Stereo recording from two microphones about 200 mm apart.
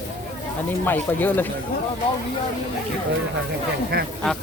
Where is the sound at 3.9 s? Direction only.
50° right (ahead or behind).